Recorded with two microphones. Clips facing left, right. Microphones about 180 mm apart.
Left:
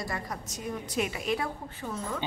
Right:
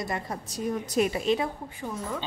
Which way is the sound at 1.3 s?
15° right (ahead or behind).